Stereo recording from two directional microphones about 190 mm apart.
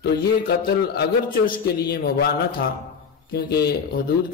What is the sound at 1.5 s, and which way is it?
A man's voice, 55° left (ahead or behind).